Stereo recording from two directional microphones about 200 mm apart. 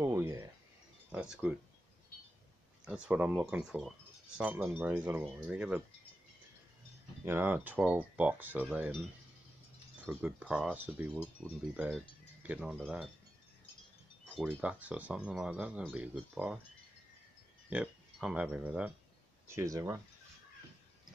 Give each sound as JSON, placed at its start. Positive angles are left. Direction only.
{"t": 0.0, "sound": "wind chime", "side_deg": -15}
{"t": 1.1, "sound": "speech", "side_deg": -5}
{"t": 2.8, "sound": "speech", "side_deg": -5}
{"t": 7.2, "sound": "speech", "side_deg": -10}
{"t": 10.0, "sound": "speech", "side_deg": -5}
{"t": 14.2, "sound": "speech", "side_deg": -5}
{"t": 17.6, "sound": "speech", "side_deg": -5}